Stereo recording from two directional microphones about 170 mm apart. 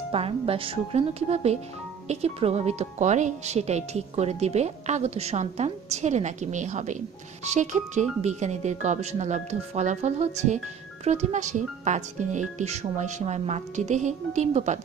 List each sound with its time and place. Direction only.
0.1 s speech: 35° right (ahead or behind)